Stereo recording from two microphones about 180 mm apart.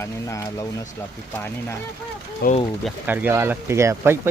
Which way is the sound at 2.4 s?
60° left (ahead or behind).